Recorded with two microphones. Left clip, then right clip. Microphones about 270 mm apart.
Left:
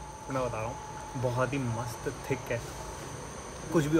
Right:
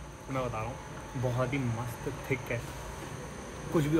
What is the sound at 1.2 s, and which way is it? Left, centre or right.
Speech, left.